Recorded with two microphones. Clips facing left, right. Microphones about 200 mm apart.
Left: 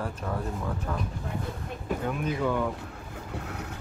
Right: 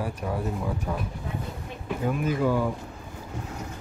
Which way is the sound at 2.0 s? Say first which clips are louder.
Right 5 dB; 5° right (ahead or behind).